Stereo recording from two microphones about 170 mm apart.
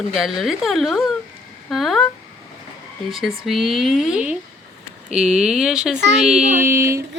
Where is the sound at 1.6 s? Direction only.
Centre (ahead or behind).